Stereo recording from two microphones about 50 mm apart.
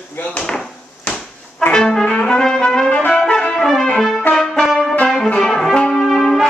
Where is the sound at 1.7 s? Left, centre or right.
Centre.